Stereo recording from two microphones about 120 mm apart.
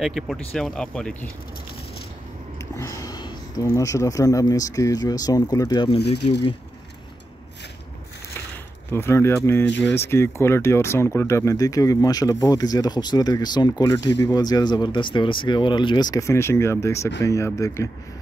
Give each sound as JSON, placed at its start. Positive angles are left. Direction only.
{"t": 0.0, "sound": "speech", "side_deg": 0}
{"t": 2.7, "sound": "a sound", "side_deg": 25}
{"t": 3.6, "sound": "speech", "side_deg": 25}
{"t": 6.0, "sound": "speech", "side_deg": 55}
{"t": 8.9, "sound": "speech", "side_deg": 20}